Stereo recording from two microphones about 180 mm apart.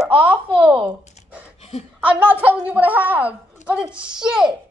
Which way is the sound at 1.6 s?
35° left (ahead or behind).